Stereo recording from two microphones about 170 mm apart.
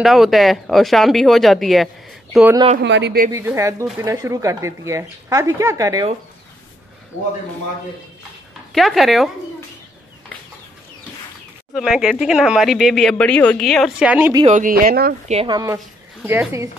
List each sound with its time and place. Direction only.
0.0 s speech: centre (ahead or behind)
2.8 s speech: 90° right
3.3 s speech: 15° right (ahead or behind)
8.7 s speech: centre (ahead or behind)
11.7 s speech: centre (ahead or behind)
14.4 s speech: 50° right (ahead or behind)
15.4 s speech: 20° right (ahead or behind)
16.2 s speech: 10° right (ahead or behind)